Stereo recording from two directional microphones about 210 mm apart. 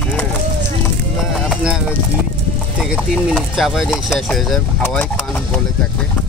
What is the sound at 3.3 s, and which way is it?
Speech, centre (ahead or behind).